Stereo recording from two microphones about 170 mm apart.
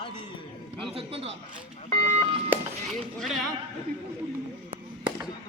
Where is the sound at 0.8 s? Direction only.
35° right (ahead or behind).